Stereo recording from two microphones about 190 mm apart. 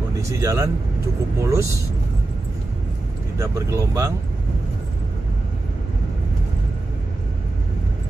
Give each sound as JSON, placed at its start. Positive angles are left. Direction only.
{"t": 0.1, "sound": "speech", "side_deg": -15}
{"t": 3.3, "sound": "speech", "side_deg": -15}